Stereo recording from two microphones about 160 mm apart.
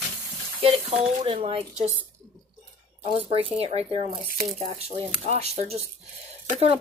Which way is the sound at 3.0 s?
35° right (ahead or behind).